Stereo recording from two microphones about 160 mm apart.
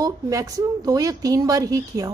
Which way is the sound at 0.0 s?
20° right (ahead or behind).